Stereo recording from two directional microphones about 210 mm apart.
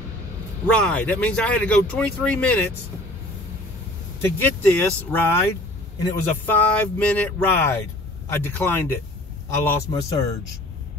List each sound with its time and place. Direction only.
0.7 s speech: 5° left (ahead or behind)
4.2 s speech: 10° left (ahead or behind)